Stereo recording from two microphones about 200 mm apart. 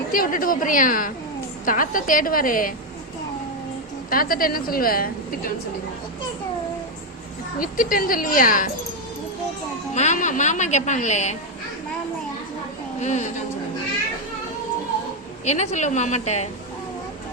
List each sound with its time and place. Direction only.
0.1 s a woman's voice: 45° left (ahead or behind)
4.1 s a woman's voice: 45° left (ahead or behind)
7.6 s a woman's voice: 45° left (ahead or behind)
9.9 s a woman's voice: 35° left (ahead or behind)
13.0 s a woman's voice: 35° left (ahead or behind)
15.4 s a woman's voice: 35° left (ahead or behind)